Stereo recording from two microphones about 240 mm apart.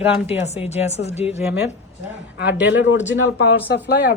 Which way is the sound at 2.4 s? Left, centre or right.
Left.